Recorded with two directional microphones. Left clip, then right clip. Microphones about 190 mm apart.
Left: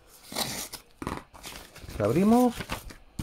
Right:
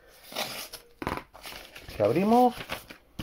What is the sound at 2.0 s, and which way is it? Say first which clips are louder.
Speech: right 2 dB; 15° left (ahead or behind).